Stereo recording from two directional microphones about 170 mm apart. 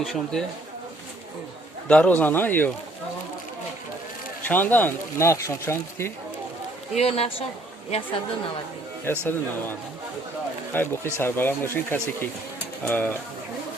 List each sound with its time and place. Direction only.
0.0 s speech: centre (ahead or behind)
1.9 s speech: 10° left (ahead or behind)
4.4 s speech: 10° left (ahead or behind)
6.9 s speech: 35° left (ahead or behind)
9.1 s speech: 10° left (ahead or behind)
10.7 s speech: 15° left (ahead or behind)